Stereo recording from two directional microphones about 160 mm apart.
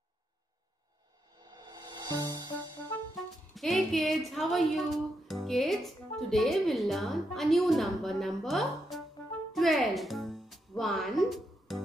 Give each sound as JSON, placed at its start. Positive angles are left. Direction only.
{"t": 1.4, "sound": "music", "side_deg": -25}
{"t": 3.5, "sound": "speech", "side_deg": 0}
{"t": 9.5, "sound": "music", "side_deg": 0}
{"t": 10.8, "sound": "speech", "side_deg": 0}